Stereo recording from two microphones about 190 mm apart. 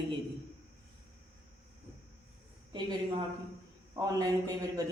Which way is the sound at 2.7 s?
25° right (ahead or behind).